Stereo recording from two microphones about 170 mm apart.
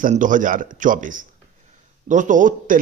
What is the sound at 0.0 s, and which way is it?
Speech, 50° right (ahead or behind).